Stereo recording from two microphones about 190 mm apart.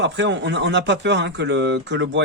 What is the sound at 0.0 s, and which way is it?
Speech, 70° right (ahead or behind).